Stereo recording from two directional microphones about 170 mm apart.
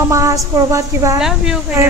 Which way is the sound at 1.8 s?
15° right (ahead or behind).